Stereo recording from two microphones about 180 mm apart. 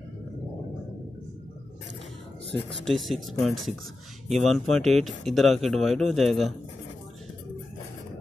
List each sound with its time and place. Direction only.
2.5 s speech: 80° right
2.9 s speech: centre (ahead or behind)